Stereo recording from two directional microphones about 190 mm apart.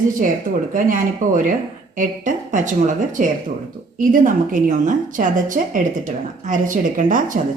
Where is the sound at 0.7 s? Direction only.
45° right (ahead or behind).